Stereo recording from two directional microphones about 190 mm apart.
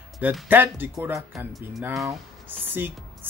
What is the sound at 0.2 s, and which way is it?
Speech, 10° right (ahead or behind).